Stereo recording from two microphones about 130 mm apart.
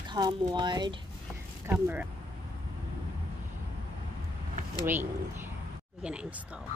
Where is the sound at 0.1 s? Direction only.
35° right (ahead or behind).